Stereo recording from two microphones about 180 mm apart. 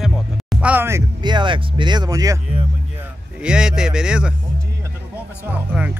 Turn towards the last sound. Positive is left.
turn(degrees=-10)  # may be behind; listen again after turning